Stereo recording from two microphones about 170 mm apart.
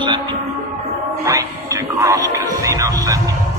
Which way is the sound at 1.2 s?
20° right (ahead or behind).